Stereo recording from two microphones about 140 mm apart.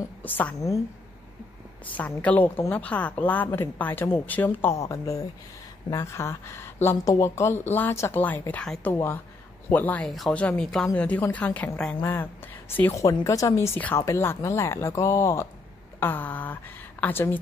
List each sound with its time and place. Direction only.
0.2 s a woman's voice: 10° left (ahead or behind)
1.9 s a woman's voice: 10° left (ahead or behind)